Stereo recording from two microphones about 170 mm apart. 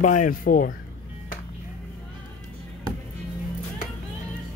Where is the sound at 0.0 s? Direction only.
50° left (ahead or behind).